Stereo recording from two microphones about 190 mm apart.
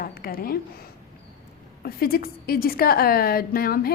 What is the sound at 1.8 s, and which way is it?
A woman's voice, 50° left (ahead or behind).